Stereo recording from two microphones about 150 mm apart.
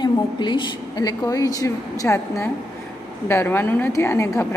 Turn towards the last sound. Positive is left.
turn(degrees=15)  # may be behind; listen again after turning